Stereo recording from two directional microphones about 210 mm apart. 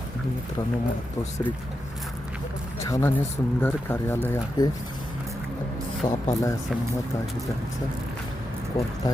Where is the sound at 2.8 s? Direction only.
15° left (ahead or behind).